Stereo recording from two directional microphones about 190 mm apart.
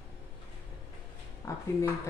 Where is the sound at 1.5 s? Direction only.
15° left (ahead or behind).